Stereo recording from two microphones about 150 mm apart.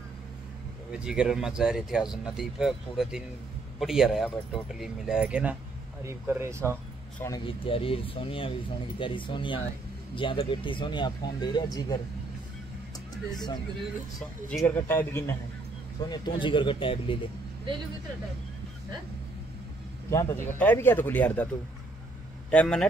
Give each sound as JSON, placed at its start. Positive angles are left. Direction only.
{"t": 0.9, "sound": "speech", "side_deg": -5}
{"t": 7.2, "sound": "speech", "side_deg": 30}
{"t": 14.6, "sound": "speech", "side_deg": 15}
{"t": 16.1, "sound": "speech", "side_deg": 35}
{"t": 20.1, "sound": "speech", "side_deg": 15}
{"t": 22.5, "sound": "speech", "side_deg": 5}